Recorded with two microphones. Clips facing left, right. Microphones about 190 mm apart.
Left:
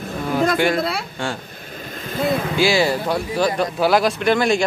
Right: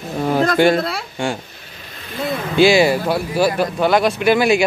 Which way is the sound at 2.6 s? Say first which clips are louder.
Right 7 dB; 20° right (ahead or behind).